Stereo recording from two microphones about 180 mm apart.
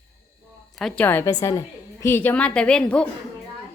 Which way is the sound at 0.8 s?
5° left (ahead or behind).